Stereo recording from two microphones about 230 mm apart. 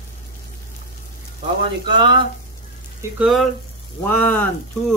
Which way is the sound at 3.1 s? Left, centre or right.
Centre.